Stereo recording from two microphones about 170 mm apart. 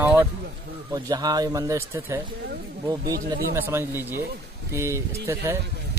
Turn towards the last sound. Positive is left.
turn(degrees=-15)  # may be behind; listen again after turning